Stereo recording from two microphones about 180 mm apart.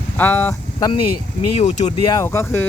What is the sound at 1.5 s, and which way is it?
Speech, 40° left (ahead or behind).